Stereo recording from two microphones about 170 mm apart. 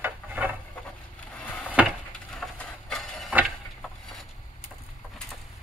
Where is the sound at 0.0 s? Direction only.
10° right (ahead or behind).